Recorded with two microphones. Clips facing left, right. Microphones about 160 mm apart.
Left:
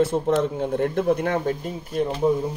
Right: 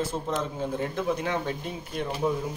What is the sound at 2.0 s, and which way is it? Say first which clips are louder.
Speech: left 6 dB; 30° left (ahead or behind).